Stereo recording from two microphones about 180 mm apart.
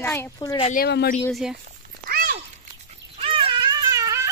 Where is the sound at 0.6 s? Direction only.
45° left (ahead or behind).